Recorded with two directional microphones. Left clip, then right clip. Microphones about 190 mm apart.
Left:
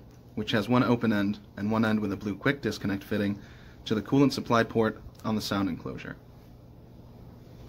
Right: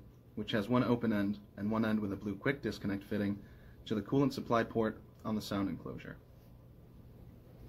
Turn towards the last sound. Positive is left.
turn(degrees=30)  # may be behind; listen again after turning